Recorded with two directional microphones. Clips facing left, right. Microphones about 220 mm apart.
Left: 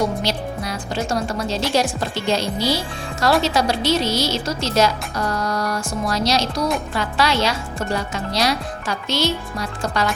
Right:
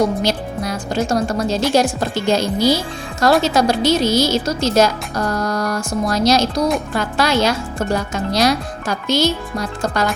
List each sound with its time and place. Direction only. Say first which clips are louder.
0.2 s speech: right 4 dB; 45° right (ahead or behind)